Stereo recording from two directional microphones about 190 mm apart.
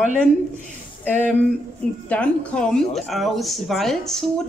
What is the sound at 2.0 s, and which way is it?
Speech, 5° left (ahead or behind).